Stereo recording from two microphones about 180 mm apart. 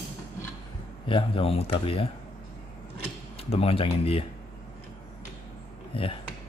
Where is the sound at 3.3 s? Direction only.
35° left (ahead or behind).